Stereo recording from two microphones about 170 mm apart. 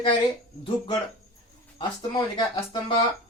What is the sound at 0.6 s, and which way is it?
Speech, 30° left (ahead or behind).